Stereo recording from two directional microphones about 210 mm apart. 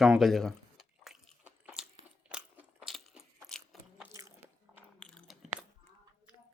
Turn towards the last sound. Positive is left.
turn(degrees=0)  # may be behind; listen again after turning